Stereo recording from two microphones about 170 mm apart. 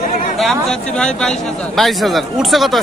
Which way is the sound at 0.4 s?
Centre (ahead or behind).